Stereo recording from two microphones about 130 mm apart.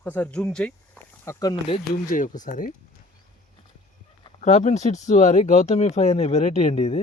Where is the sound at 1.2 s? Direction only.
30° left (ahead or behind).